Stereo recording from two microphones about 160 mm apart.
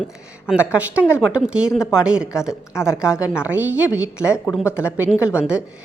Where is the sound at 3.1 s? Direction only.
20° left (ahead or behind).